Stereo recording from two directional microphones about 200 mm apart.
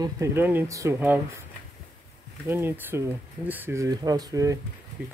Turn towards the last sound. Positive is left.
turn(degrees=-5)  # may be behind; listen again after turning